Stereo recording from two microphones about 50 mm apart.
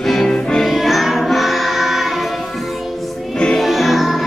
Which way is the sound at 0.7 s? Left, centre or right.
Centre.